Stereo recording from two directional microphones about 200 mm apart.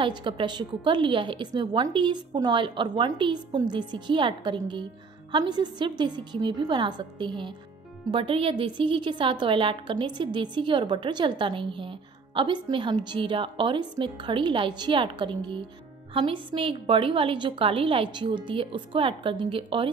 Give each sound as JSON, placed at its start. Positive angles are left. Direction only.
{"t": 0.0, "sound": "a woman's voice", "side_deg": -25}